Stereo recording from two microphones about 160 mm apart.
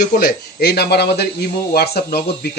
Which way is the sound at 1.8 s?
80° left.